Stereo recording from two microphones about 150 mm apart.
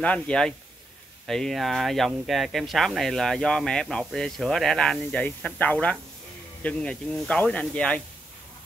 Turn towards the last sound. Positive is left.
turn(degrees=10)  # may be behind; listen again after turning